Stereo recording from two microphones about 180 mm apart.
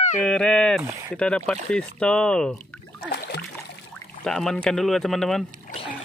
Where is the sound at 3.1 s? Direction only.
65° left (ahead or behind).